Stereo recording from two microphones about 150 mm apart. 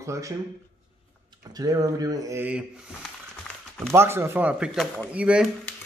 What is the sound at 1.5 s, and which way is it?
Speech, 25° right (ahead or behind).